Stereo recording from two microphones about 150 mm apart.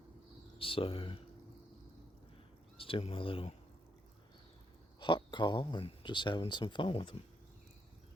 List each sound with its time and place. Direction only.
0.6 s speech: 35° left (ahead or behind)
2.7 s speech: 35° left (ahead or behind)
4.9 s speech: 30° left (ahead or behind)